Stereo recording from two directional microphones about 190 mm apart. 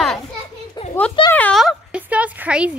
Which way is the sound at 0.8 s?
25° left (ahead or behind).